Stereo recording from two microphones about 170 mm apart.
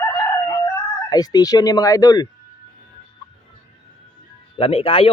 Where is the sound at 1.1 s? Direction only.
25° left (ahead or behind).